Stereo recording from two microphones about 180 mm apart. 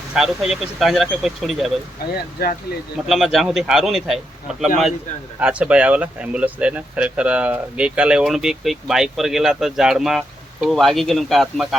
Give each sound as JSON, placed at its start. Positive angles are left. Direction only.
{"t": 0.1, "sound": "speech", "side_deg": 0}
{"t": 2.1, "sound": "speech", "side_deg": 55}
{"t": 3.1, "sound": "speech", "side_deg": 0}